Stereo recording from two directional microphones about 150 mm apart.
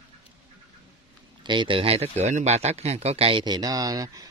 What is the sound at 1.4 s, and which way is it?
A man's voice, 30° right (ahead or behind).